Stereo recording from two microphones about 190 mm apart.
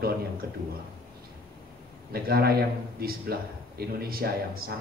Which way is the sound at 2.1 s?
55° right (ahead or behind).